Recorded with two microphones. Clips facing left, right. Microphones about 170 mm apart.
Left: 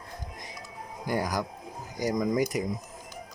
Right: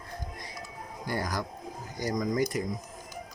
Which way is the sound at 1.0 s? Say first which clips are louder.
Left 3 dB; 15° left (ahead or behind).